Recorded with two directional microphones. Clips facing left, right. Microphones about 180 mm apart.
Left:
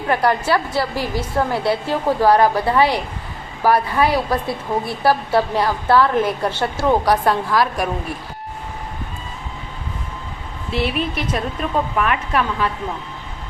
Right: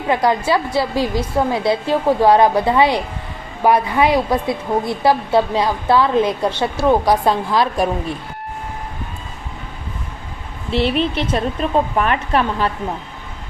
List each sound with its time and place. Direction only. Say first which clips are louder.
0.1 s a woman's voice: right 1 dB; 15° right (ahead or behind)
10.7 s a woman's voice: right 4 dB; 30° right (ahead or behind)